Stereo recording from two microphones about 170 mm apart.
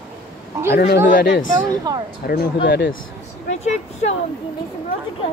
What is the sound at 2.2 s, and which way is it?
Speech, 65° left (ahead or behind).